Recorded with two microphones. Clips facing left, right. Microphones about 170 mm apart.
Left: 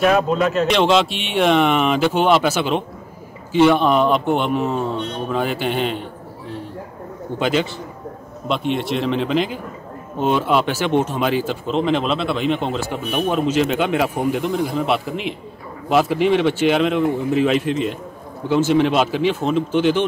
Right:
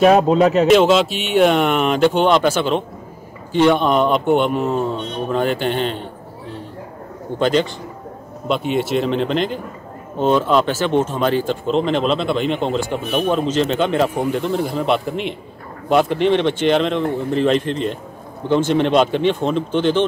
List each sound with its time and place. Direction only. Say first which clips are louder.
0.0 s a man's voice: right 4 dB; 35° right (ahead or behind)
0.7 s speech: right 4 dB; 5° right (ahead or behind)
7.3 s speech: right 3 dB; 5° left (ahead or behind)